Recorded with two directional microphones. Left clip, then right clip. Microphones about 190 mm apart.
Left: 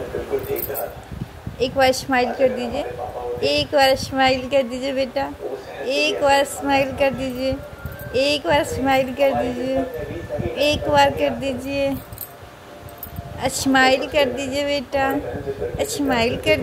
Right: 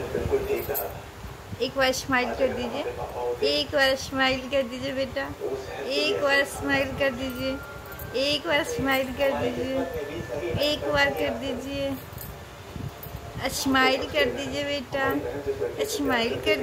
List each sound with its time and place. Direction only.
1.6 s a woman's voice: 20° left (ahead or behind)
13.4 s a woman's voice: 25° left (ahead or behind)